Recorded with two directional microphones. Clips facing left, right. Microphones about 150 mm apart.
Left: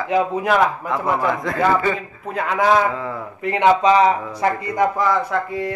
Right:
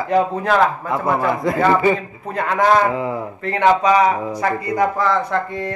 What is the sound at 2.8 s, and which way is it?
Speech, 15° right (ahead or behind).